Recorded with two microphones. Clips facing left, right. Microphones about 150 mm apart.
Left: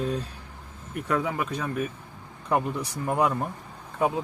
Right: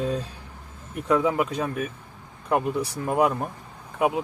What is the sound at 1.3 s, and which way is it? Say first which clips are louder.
Speech: right 5 dB; 20° right (ahead or behind).